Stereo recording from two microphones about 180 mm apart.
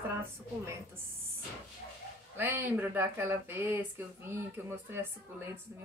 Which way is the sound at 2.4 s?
10° right (ahead or behind).